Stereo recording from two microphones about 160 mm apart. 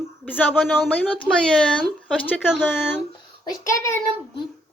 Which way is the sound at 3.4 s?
20° left (ahead or behind).